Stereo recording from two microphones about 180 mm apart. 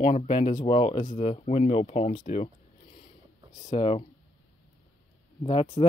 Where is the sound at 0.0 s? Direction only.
35° left (ahead or behind).